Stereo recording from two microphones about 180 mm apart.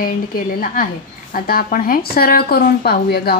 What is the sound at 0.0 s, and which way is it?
A woman's voice, 55° left (ahead or behind).